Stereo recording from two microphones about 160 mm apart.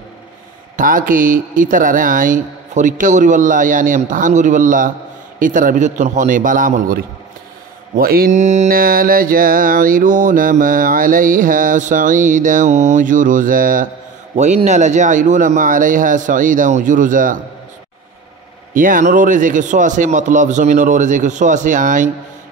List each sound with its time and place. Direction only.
0.7 s mantra: 60° right (ahead or behind)
7.9 s mantra: 70° right (ahead or behind)
14.3 s a man's voice: 45° right (ahead or behind)
18.8 s a man's voice: 55° right (ahead or behind)